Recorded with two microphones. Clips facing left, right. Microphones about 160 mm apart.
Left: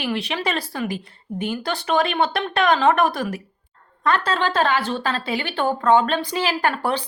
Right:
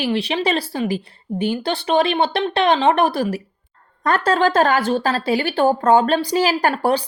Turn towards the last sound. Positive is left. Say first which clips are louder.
# right 4 dB
turn(degrees=-40)  # may be behind; listen again after turning